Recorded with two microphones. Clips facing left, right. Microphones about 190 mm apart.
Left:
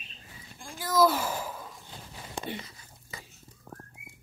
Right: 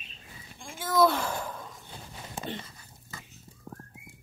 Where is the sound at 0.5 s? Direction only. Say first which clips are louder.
Even; centre (ahead or behind).